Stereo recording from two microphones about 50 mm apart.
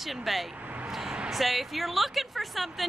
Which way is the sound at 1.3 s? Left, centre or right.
Centre.